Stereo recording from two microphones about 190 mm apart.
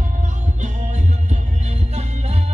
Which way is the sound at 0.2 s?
40° right (ahead or behind).